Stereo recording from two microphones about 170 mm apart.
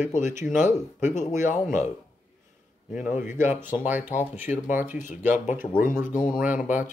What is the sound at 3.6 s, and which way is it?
Speech, 10° right (ahead or behind).